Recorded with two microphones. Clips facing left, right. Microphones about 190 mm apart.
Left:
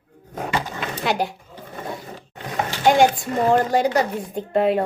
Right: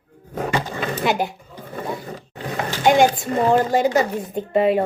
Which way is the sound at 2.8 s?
Centre (ahead or behind).